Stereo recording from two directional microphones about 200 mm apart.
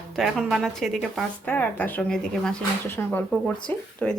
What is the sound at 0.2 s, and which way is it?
A woman's voice, centre (ahead or behind).